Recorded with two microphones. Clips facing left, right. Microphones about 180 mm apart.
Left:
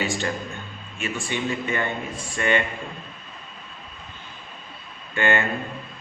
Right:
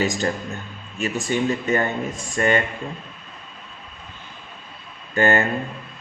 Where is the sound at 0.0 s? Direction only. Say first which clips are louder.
Right 4 dB; 40° right (ahead or behind).